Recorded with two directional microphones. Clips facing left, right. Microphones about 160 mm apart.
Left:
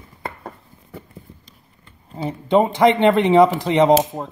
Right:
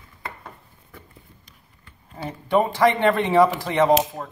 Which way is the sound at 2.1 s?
20° left (ahead or behind).